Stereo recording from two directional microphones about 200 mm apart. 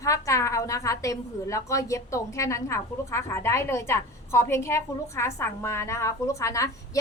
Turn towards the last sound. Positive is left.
turn(degrees=15)  # may be behind; listen again after turning